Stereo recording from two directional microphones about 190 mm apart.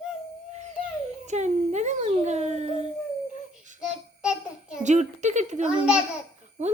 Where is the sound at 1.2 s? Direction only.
35° right (ahead or behind).